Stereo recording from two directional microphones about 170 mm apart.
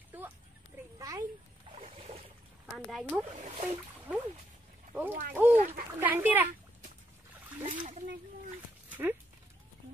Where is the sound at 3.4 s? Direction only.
40° right (ahead or behind).